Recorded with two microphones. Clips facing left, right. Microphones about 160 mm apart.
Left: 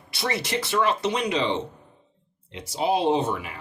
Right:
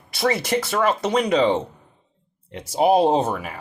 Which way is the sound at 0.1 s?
50° right (ahead or behind).